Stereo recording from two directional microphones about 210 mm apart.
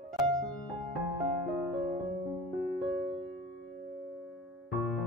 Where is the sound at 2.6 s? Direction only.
Centre (ahead or behind).